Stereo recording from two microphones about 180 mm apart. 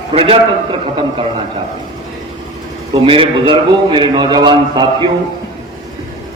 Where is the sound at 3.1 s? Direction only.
30° right (ahead or behind).